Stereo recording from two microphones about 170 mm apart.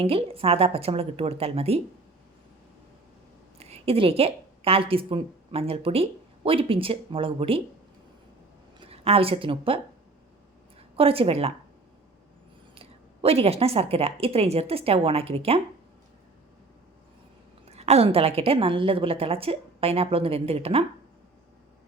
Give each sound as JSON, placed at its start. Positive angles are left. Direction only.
{"t": 0.0, "sound": "a woman's voice", "side_deg": -35}
{"t": 3.6, "sound": "a woman's voice", "side_deg": -35}
{"t": 8.8, "sound": "a woman's voice", "side_deg": -35}
{"t": 12.7, "sound": "a woman's voice", "side_deg": -35}
{"t": 17.7, "sound": "a woman's voice", "side_deg": -40}